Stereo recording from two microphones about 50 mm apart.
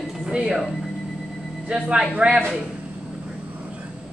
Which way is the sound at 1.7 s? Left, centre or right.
Centre.